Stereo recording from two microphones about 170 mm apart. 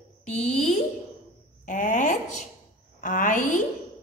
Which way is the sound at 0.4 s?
45° left (ahead or behind).